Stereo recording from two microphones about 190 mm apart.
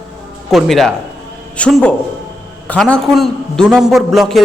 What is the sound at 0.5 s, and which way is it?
A man's voice, centre (ahead or behind).